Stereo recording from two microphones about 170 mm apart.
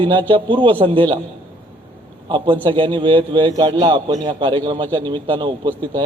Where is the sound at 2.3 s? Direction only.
30° right (ahead or behind).